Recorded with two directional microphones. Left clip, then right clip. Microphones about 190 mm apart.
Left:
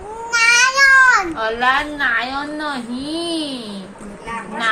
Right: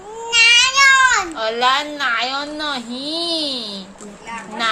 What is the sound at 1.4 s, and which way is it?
A woman's voice, 55° right (ahead or behind).